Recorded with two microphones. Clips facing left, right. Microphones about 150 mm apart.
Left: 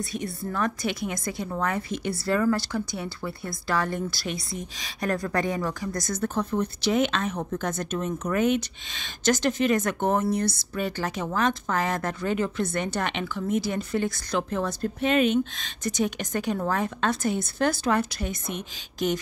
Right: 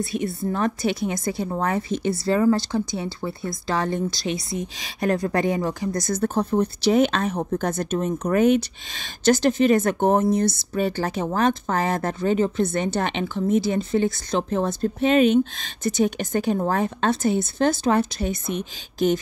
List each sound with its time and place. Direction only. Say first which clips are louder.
0.2 s speech: right 3 dB; 25° right (ahead or behind)